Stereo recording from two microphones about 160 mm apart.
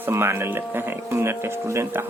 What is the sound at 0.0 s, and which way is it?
Speech, 15° right (ahead or behind).